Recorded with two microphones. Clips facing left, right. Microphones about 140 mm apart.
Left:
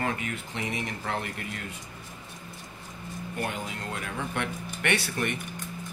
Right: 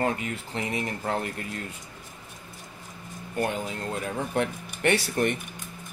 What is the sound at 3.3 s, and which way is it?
A man's voice, 40° right (ahead or behind).